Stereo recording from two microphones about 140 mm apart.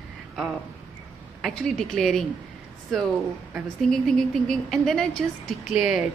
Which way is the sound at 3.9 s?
5° left (ahead or behind).